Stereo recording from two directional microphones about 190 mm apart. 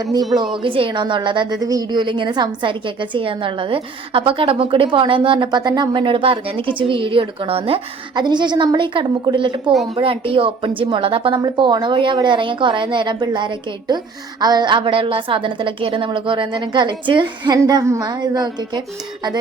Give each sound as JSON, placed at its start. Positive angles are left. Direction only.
{"t": 0.5, "sound": "a woman's voice", "side_deg": -25}